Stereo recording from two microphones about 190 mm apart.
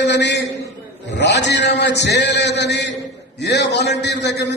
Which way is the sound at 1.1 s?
65° left (ahead or behind).